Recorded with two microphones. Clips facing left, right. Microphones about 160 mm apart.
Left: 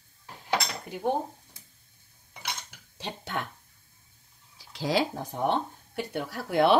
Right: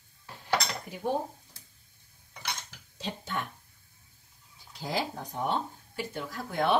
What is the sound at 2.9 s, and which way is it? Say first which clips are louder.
Speech: left 1 dB; 65° left (ahead or behind).